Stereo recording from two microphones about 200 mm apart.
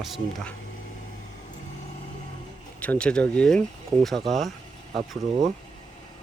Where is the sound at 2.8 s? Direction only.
5° left (ahead or behind).